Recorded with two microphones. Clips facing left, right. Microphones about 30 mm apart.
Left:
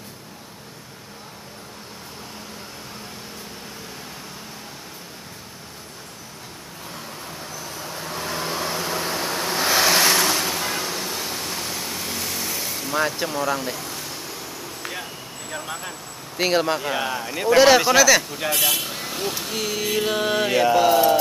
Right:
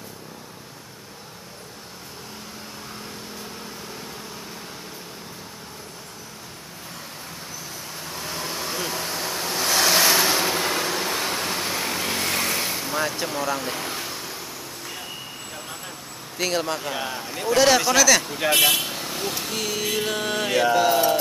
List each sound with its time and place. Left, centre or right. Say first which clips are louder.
8.2 s vehicle: left 4 dB; centre; by 12.4 s right
12.4 s vehicle: right 4 dB; right
13.2 s mantra: left 2 dB; centre
13.7 s a sound: right 1 dB; right
14.8 s vehicle: left 4 dB; left
16.3 s speech: left 4 dB; centre
18.4 s speech: right 4 dB; centre
18.9 s mantra: left 1 dB; centre